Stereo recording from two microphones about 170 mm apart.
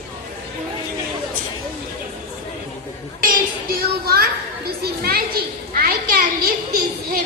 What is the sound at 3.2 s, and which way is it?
Chatter, 60° right (ahead or behind).